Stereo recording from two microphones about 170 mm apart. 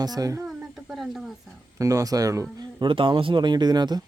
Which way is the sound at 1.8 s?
20° right (ahead or behind).